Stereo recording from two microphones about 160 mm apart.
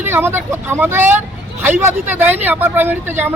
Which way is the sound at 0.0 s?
15° right (ahead or behind).